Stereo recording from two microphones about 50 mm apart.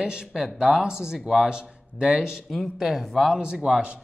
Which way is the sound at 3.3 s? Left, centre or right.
Centre.